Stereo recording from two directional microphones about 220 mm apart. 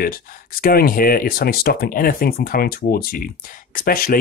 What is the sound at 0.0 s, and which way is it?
Speech, 40° left (ahead or behind).